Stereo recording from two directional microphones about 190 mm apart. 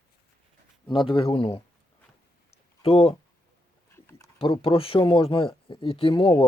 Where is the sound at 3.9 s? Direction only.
10° left (ahead or behind).